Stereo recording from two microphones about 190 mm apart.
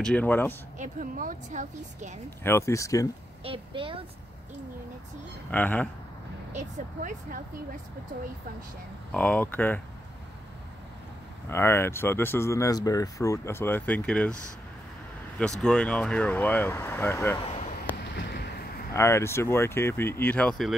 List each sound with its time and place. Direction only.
0.0 s speech: 10° left (ahead or behind)
0.7 s a woman's voice: 45° right (ahead or behind)
2.4 s speech: 15° left (ahead or behind)
3.4 s a woman's voice: 30° right (ahead or behind)
5.5 s speech: 10° left (ahead or behind)
6.5 s a woman's voice: 40° right (ahead or behind)
9.1 s speech: 5° left (ahead or behind)
11.4 s speech: 15° left (ahead or behind)
15.6 s speech: 5° left (ahead or behind)
18.0 s a sound: 65° left (ahead or behind)
18.9 s speech: 15° left (ahead or behind)